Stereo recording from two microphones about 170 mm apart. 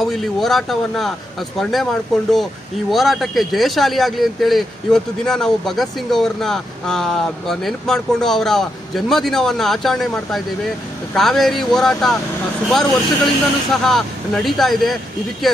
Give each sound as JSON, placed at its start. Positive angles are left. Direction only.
{"t": 0.0, "sound": "speech", "side_deg": 0}
{"t": 2.9, "sound": "speech", "side_deg": 0}